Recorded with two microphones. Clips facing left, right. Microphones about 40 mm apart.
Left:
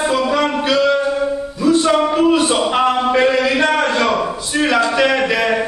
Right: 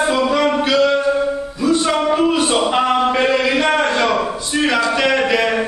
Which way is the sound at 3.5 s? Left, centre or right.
Right.